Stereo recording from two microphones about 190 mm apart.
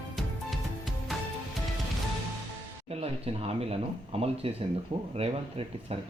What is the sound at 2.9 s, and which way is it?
Speech, 30° right (ahead or behind).